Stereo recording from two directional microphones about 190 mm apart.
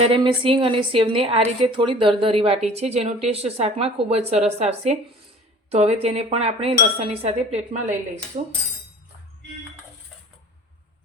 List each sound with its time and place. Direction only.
0.0 s a woman's voice: 30° right (ahead or behind)